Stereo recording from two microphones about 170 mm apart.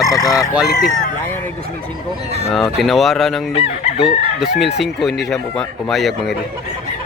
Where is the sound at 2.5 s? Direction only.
Centre (ahead or behind).